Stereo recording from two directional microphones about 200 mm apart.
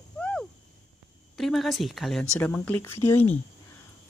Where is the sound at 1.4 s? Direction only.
Centre (ahead or behind).